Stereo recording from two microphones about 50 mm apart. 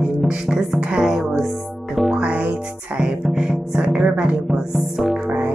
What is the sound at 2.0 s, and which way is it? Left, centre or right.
Music, centre.